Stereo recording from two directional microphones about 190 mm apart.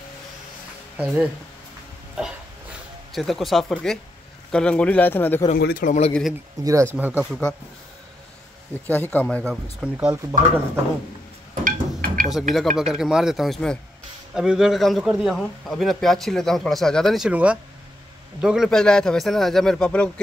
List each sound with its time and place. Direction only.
0.9 s speech: 5° right (ahead or behind)
3.1 s speech: centre (ahead or behind)
5.6 s a man's voice: 50° left (ahead or behind)
6.6 s speech: 15° right (ahead or behind)
7.2 s speech: 5° left (ahead or behind)
8.8 s speech: 10° left (ahead or behind)
9.5 s speech: 5° right (ahead or behind)
11.6 s a sound: 45° right (ahead or behind)
12.5 s speech: centre (ahead or behind)